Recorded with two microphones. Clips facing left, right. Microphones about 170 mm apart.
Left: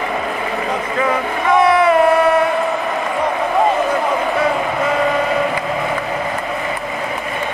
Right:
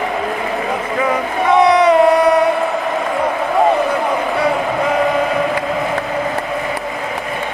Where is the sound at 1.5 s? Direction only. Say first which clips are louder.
Right 2 dB; 20° right (ahead or behind).